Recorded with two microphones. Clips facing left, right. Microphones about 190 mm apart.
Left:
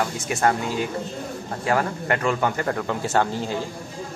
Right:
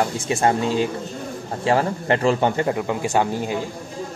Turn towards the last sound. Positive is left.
turn(degrees=-15)  # may be behind; listen again after turning